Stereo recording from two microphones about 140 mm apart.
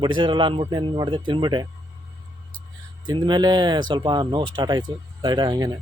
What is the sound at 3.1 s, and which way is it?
Speech, 35° right (ahead or behind).